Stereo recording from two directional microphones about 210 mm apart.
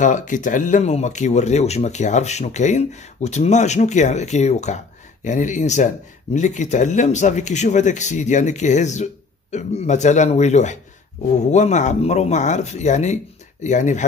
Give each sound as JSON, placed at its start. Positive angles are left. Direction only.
{"t": 0.0, "sound": "speech", "side_deg": 35}